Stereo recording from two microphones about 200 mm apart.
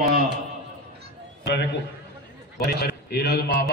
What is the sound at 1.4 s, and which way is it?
A man's voice, 60° left (ahead or behind).